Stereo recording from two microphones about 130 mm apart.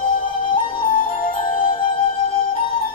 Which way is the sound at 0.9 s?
90° left.